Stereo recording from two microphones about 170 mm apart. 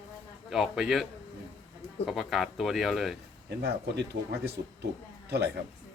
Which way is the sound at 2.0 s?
Centre (ahead or behind).